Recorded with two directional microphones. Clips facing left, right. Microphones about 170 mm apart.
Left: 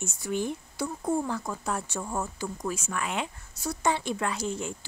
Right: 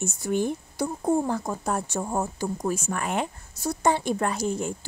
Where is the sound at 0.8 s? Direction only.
40° right (ahead or behind).